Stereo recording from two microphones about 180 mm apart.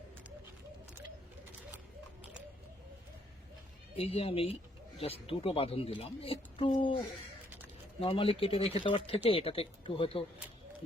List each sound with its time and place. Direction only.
3.9 s speech: 35° left (ahead or behind)